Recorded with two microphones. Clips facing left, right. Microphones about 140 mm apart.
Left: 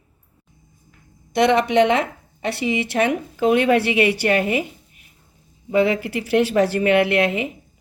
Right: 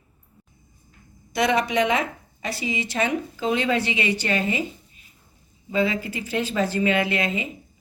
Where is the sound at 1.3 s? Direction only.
60° left (ahead or behind).